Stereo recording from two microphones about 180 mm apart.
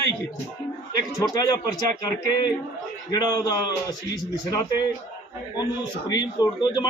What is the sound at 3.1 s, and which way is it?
A man's voice, 25° left (ahead or behind).